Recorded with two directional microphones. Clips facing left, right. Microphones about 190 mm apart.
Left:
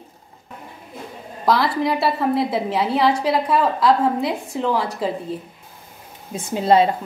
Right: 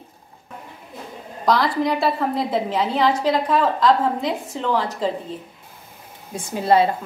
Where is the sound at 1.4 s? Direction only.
5° left (ahead or behind).